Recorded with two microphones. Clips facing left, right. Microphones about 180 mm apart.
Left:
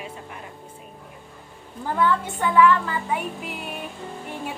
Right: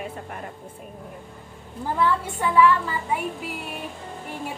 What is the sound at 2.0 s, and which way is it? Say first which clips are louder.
Music: left 1 dB; 5° right (ahead or behind).